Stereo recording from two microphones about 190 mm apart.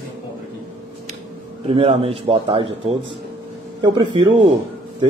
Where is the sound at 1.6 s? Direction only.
30° right (ahead or behind).